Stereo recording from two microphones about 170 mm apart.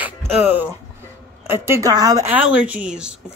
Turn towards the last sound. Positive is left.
turn(degrees=-5)  # may be behind; listen again after turning